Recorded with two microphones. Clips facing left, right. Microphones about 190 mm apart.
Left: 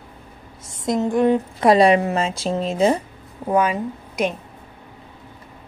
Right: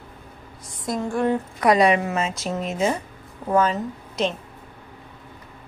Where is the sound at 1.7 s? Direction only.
30° left (ahead or behind).